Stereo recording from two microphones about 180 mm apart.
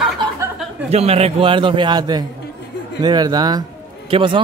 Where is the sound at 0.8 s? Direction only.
35° right (ahead or behind).